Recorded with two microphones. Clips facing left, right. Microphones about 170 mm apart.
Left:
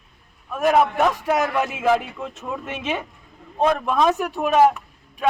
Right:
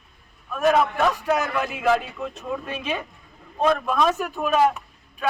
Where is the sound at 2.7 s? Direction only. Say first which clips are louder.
Left 5 dB; 20° left (ahead or behind).